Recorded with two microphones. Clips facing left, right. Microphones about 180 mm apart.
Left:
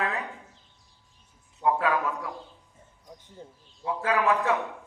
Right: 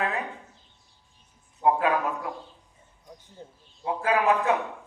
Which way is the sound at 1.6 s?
20° right (ahead or behind).